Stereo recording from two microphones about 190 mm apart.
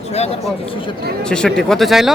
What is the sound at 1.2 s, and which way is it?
Speech, 5° left (ahead or behind).